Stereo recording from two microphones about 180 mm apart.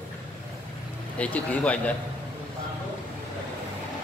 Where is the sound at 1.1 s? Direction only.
10° left (ahead or behind).